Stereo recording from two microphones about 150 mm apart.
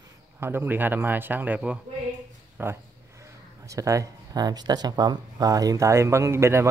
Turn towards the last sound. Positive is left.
turn(degrees=-15)  # may be behind; listen again after turning